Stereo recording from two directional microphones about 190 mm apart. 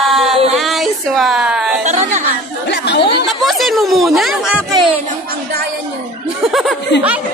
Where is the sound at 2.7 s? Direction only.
60° left (ahead or behind).